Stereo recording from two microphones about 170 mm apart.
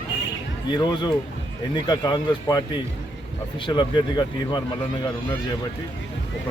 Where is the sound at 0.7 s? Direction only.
25° left (ahead or behind).